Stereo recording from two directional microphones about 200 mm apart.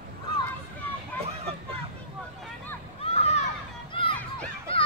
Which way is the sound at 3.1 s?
30° left (ahead or behind).